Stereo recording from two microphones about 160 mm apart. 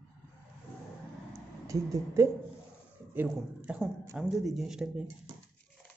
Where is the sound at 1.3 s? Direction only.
20° right (ahead or behind).